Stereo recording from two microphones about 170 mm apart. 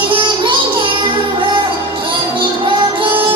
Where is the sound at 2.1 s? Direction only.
30° right (ahead or behind).